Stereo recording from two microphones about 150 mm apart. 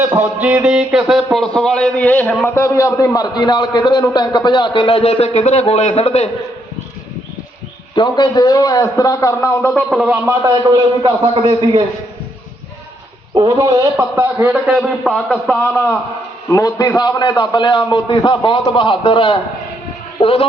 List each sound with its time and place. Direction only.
0.1 s a man's voice: 10° right (ahead or behind); by 6.2 s 45° left (ahead or behind)
7.9 s a man's voice: 30° left (ahead or behind)
9.7 s a man's voice: centre (ahead or behind)
10.1 s a man's voice: 20° right (ahead or behind)
13.3 s a man's voice: 30° right (ahead or behind)
14.7 s a man's voice: centre (ahead or behind)
15.6 s a man's voice: 15° left (ahead or behind); by 20.5 s 35° left (ahead or behind)